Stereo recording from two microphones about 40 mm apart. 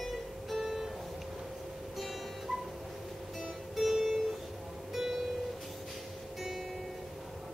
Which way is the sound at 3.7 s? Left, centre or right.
Centre.